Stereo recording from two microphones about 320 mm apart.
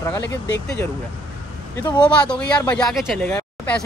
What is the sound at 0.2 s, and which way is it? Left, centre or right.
Speech, left.